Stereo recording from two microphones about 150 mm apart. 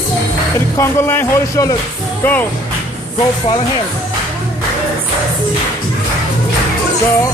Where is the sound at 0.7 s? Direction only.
15° left (ahead or behind).